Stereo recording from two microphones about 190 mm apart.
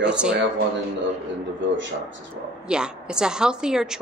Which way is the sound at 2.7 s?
5° right (ahead or behind).